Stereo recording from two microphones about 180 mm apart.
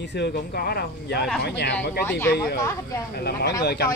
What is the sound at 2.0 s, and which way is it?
Speech, 10° left (ahead or behind).